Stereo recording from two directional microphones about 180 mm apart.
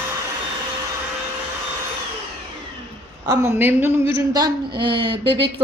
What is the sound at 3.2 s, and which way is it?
Speech, 15° right (ahead or behind).